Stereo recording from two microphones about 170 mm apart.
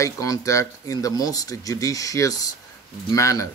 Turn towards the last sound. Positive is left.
turn(degrees=20)  # may be behind; listen again after turning